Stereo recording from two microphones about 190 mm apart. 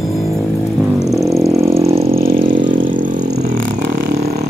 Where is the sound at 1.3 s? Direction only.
15° right (ahead or behind).